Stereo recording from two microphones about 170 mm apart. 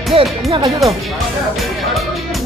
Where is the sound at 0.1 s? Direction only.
30° right (ahead or behind).